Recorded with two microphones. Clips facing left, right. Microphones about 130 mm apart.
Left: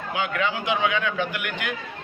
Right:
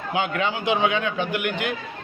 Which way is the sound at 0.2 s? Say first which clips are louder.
Right 1 dB; 25° right (ahead or behind).